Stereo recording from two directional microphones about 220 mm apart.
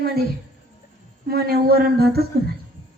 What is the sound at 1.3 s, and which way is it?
Speech, 45° right (ahead or behind).